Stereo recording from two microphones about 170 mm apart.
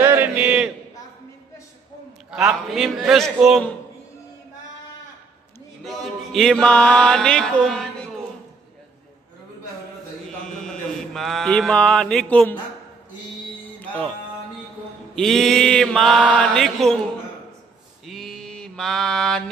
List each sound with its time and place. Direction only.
0.0 s a sound: 10° right (ahead or behind)
2.3 s mantra: centre (ahead or behind)
5.9 s mantra: centre (ahead or behind)
10.2 s mantra: 5° left (ahead or behind)
13.7 s music: 10° left (ahead or behind)
15.1 s mantra: centre (ahead or behind)
18.0 s mantra: centre (ahead or behind)